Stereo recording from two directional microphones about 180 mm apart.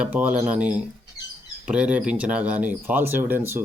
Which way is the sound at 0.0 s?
10° right (ahead or behind).